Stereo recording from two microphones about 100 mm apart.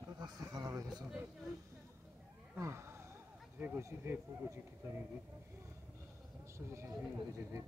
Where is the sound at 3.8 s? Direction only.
30° right (ahead or behind).